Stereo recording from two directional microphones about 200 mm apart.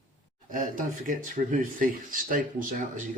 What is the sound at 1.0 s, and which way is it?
Speech, 40° right (ahead or behind).